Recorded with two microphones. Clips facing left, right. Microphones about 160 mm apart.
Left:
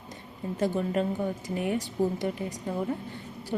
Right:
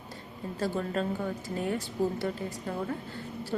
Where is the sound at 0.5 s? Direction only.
15° left (ahead or behind).